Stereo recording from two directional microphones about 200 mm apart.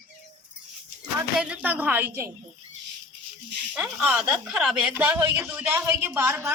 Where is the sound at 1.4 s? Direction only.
5° right (ahead or behind).